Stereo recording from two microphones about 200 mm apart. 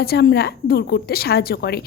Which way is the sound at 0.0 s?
50° left (ahead or behind).